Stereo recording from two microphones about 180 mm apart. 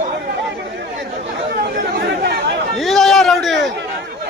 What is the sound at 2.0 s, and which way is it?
Chatter, 70° right (ahead or behind).